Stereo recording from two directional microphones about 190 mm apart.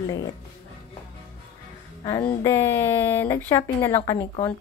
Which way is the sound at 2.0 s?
20° left (ahead or behind).